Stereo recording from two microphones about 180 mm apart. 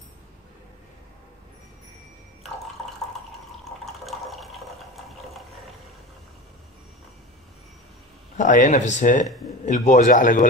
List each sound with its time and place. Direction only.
3.8 s water: centre (ahead or behind)
8.4 s speech: 45° left (ahead or behind)